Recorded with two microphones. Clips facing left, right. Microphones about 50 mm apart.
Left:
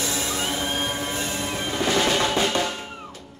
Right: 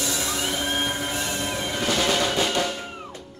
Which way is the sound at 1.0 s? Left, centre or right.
Left.